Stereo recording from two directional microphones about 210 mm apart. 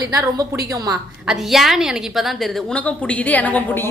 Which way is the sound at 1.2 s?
Centre (ahead or behind).